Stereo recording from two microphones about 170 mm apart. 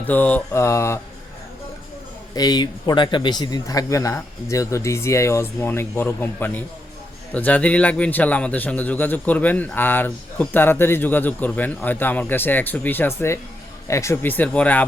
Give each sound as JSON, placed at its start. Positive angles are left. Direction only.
{"t": 0.1, "sound": "a man's voice", "side_deg": 10}
{"t": 2.3, "sound": "a man's voice", "side_deg": 25}